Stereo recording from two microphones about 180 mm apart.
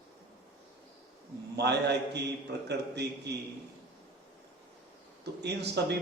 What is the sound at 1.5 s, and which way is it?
A man's voice, 70° right (ahead or behind).